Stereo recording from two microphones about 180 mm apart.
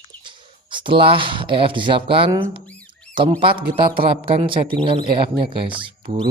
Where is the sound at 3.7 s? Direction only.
30° right (ahead or behind).